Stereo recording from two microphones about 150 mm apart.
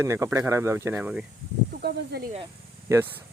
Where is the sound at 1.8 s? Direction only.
85° right.